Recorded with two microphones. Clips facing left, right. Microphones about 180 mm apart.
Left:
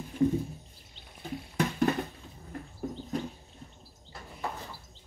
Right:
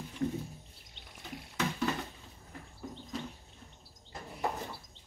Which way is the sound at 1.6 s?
50° left (ahead or behind).